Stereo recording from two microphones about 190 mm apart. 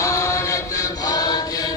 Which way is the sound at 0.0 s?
15° left (ahead or behind).